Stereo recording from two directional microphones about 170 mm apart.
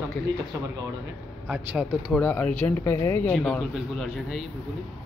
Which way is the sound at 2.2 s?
10° left (ahead or behind).